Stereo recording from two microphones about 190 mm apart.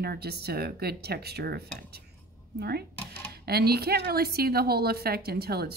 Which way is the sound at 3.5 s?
55° right (ahead or behind).